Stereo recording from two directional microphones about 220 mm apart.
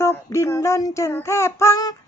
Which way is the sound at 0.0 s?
10° left (ahead or behind).